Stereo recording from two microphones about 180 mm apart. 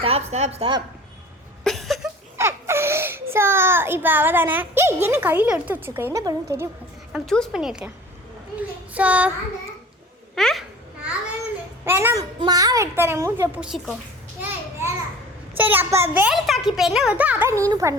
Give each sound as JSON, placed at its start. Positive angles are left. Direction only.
{"t": 0.0, "sound": "a woman's voice", "side_deg": -35}
{"t": 1.6, "sound": "a sound", "side_deg": 0}
{"t": 2.4, "sound": "a child's voice", "side_deg": -15}
{"t": 7.1, "sound": "a woman's voice", "side_deg": 5}
{"t": 10.3, "sound": "babbling", "side_deg": 0}
{"t": 11.9, "sound": "a child's voice", "side_deg": -15}
{"t": 15.5, "sound": "a child's voice", "side_deg": -10}